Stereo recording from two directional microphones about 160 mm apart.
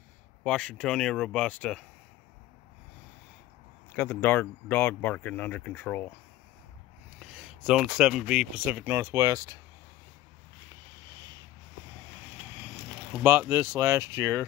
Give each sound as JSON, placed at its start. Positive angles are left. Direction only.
{"t": 0.4, "sound": "speech", "side_deg": 5}
{"t": 3.9, "sound": "speech", "side_deg": 15}
{"t": 7.2, "sound": "a sound", "side_deg": 0}
{"t": 8.0, "sound": "speech", "side_deg": -5}
{"t": 12.6, "sound": "speech", "side_deg": -10}